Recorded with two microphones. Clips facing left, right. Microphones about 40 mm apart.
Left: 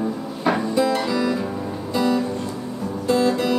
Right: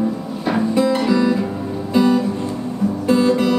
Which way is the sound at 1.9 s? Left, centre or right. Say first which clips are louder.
Right 5 dB; right.